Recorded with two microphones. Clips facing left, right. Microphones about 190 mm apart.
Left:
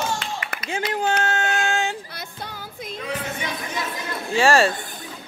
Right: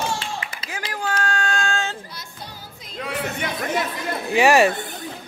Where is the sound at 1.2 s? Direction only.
20° left (ahead or behind).